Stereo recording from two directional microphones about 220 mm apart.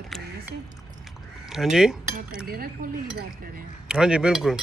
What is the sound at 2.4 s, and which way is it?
Speech, 45° right (ahead or behind).